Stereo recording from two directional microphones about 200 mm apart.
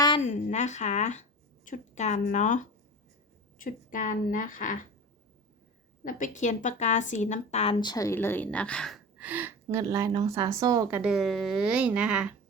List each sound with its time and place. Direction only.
0.2 s a sound: 35° left (ahead or behind)
1.6 s a woman's voice: 40° left (ahead or behind)
6.1 s a woman's voice: 40° left (ahead or behind); by 9.0 s 5° left (ahead or behind)
9.1 s a woman's voice: 10° right (ahead or behind)
11.0 s speech: centre (ahead or behind)